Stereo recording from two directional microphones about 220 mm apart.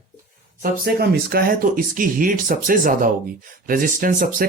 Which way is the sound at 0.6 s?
45° right (ahead or behind).